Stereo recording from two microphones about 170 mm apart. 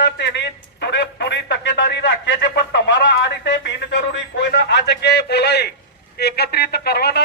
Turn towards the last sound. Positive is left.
turn(degrees=70)  # may be behind; listen again after turning